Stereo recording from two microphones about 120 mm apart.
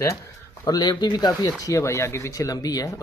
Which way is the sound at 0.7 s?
35° left (ahead or behind).